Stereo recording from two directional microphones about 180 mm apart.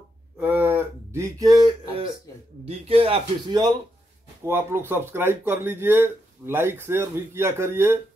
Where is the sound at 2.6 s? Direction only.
35° right (ahead or behind).